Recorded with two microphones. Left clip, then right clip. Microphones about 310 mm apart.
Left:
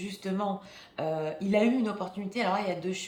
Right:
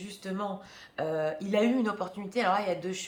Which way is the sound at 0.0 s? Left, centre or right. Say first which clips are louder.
Left 3 dB; centre.